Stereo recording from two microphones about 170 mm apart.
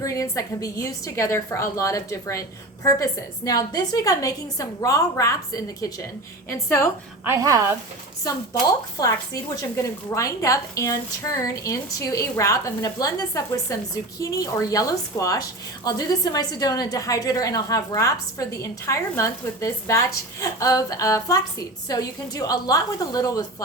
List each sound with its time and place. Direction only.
0.0 s a woman's voice: 20° left (ahead or behind)
7.3 s a woman's voice: 20° right (ahead or behind)
8.6 s a woman's voice: 20° left (ahead or behind)